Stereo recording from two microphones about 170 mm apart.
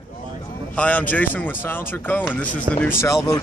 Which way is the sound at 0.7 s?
10° left (ahead or behind).